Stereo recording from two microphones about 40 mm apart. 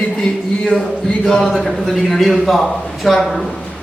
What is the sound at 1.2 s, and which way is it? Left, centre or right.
Speech, centre.